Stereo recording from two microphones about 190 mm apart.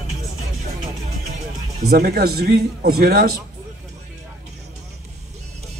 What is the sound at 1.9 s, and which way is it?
A man's voice, 55° right (ahead or behind).